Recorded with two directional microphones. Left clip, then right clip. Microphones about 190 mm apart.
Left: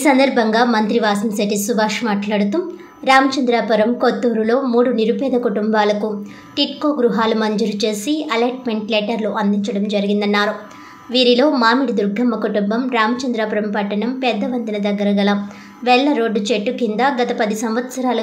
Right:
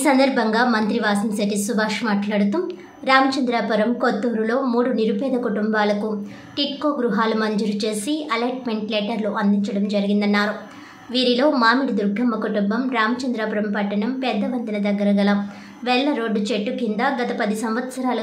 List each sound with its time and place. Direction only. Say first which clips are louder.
0.0 s a woman's voice: left 4 dB; 10° left (ahead or behind)